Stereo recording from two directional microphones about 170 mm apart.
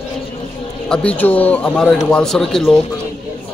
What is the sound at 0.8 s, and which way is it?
A man's voice, 5° left (ahead or behind).